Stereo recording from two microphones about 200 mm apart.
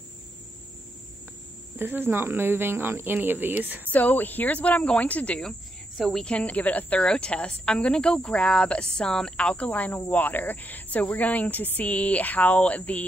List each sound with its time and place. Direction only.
1.8 s speech: 10° right (ahead or behind)
3.9 s a woman's voice: 10° left (ahead or behind)